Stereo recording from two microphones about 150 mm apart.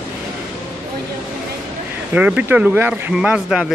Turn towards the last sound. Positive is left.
turn(degrees=-5)  # may be behind; listen again after turning